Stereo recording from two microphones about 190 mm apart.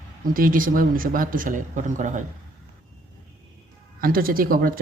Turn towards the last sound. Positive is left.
turn(degrees=-50)  # may be behind; listen again after turning